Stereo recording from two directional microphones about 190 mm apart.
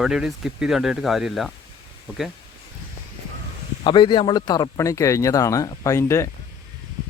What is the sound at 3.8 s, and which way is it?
Speech, 25° left (ahead or behind).